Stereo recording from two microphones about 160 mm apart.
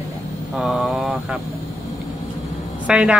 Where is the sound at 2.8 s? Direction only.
5° right (ahead or behind).